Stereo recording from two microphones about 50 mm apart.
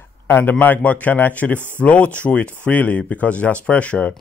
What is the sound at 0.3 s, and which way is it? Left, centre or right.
A man's voice, left.